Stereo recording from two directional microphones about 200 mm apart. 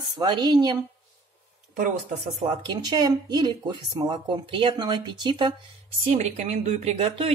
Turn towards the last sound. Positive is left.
turn(degrees=-30)  # may be behind; listen again after turning